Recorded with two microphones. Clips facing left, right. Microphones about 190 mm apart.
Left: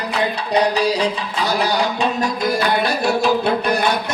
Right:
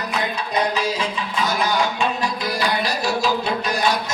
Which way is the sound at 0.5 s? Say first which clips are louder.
Left 6 dB; 35° left (ahead or behind).